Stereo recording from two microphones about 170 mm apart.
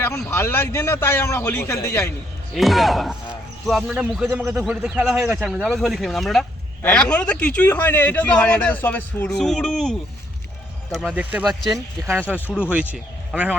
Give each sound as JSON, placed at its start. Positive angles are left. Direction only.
{"t": 0.3, "sound": "a man's voice", "side_deg": 10}
{"t": 2.6, "sound": "a man's voice", "side_deg": 0}
{"t": 11.1, "sound": "a man's voice", "side_deg": -10}
{"t": 12.9, "sound": "speech", "side_deg": -10}